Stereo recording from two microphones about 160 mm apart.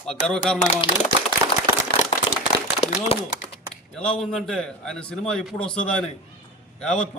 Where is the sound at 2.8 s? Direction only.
40° left (ahead or behind).